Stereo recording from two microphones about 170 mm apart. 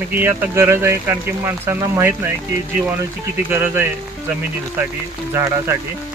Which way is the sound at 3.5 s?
10° right (ahead or behind).